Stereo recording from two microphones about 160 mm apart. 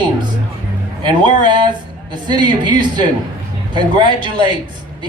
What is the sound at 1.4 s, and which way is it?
Speech, 30° right (ahead or behind).